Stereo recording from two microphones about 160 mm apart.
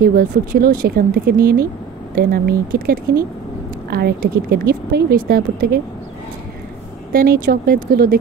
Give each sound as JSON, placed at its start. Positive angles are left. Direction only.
{"t": 0.0, "sound": "speech", "side_deg": -65}
{"t": 3.9, "sound": "speech", "side_deg": -75}
{"t": 7.1, "sound": "speech", "side_deg": -65}